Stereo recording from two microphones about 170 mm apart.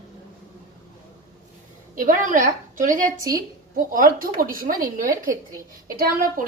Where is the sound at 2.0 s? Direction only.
50° right (ahead or behind).